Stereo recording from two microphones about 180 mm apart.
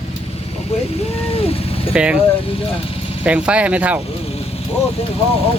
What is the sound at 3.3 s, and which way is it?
Speech, 5° right (ahead or behind).